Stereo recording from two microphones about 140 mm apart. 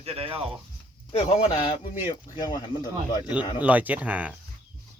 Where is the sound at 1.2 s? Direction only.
40° left (ahead or behind).